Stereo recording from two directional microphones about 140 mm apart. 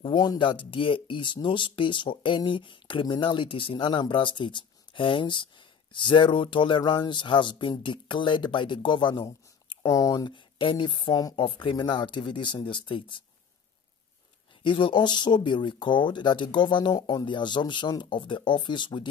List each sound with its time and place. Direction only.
0.0 s speech: 30° left (ahead or behind)
14.6 s speech: 35° left (ahead or behind)